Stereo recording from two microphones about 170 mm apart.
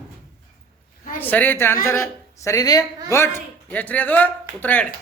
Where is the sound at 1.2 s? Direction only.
10° left (ahead or behind).